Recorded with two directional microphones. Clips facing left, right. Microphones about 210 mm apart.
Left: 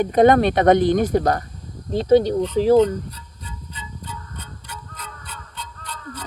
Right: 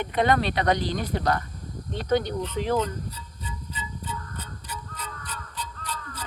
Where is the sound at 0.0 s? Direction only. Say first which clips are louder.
Left 9 dB; 45° left (ahead or behind).